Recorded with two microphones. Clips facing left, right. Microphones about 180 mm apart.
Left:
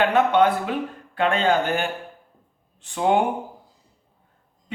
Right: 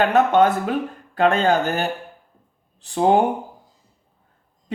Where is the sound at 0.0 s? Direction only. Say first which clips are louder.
Right 2 dB; 45° right (ahead or behind).